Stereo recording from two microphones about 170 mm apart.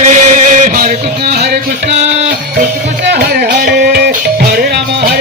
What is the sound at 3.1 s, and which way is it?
Music, 70° right (ahead or behind).